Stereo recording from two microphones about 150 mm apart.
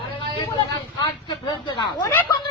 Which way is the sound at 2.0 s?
20° left (ahead or behind).